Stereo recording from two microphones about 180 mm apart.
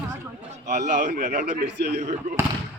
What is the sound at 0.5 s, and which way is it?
A man's voice, 40° right (ahead or behind).